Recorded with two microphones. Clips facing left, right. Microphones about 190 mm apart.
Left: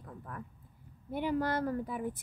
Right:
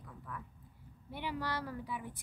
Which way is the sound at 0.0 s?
45° left (ahead or behind).